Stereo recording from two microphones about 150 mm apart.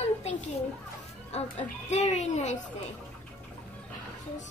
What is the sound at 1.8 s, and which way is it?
Speech, 50° left (ahead or behind).